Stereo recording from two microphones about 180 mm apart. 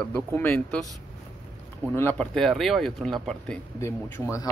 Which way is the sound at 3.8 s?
15° left (ahead or behind).